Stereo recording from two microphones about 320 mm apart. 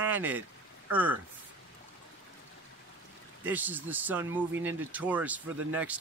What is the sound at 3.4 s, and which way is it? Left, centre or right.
Speech, centre.